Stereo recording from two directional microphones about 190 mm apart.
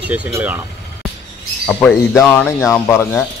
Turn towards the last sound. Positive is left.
turn(degrees=10)  # may be behind; listen again after turning